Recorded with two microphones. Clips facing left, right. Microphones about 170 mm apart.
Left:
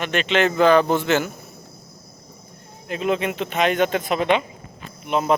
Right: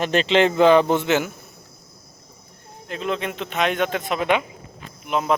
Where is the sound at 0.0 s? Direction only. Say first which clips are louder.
Right 2 dB; 35° right (ahead or behind); by 1.3 s 15° right (ahead or behind).